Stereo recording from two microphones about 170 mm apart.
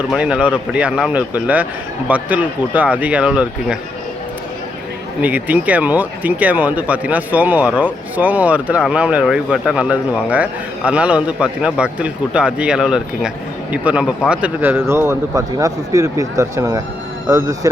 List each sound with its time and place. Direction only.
0.1 s speech: 5° right (ahead or behind)
5.2 s speech: 10° right (ahead or behind)